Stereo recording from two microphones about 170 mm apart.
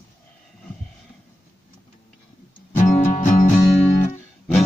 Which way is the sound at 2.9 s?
45° left (ahead or behind).